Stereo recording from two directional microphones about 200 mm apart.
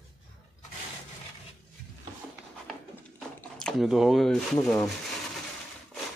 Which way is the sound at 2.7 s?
Centre (ahead or behind).